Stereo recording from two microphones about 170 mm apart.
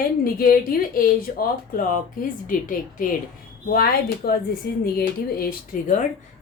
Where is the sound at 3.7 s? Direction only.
65° left (ahead or behind).